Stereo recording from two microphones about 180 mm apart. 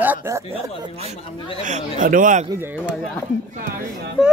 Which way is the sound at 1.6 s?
45° right (ahead or behind).